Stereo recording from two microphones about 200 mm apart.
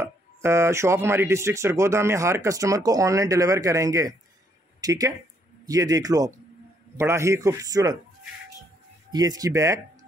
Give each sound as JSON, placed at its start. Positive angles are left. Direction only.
{"t": 0.0, "sound": "speech", "side_deg": -15}
{"t": 9.1, "sound": "speech", "side_deg": -20}